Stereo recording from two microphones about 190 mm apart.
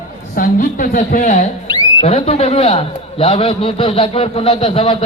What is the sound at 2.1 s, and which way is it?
A man's voice, 30° left (ahead or behind).